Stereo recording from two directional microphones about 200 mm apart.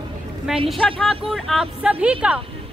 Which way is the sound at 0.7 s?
Centre (ahead or behind).